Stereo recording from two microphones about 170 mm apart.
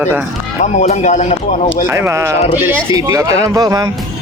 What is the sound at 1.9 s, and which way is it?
Speech, 15° right (ahead or behind).